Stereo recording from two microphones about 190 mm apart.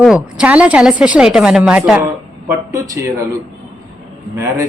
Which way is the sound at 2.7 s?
15° right (ahead or behind).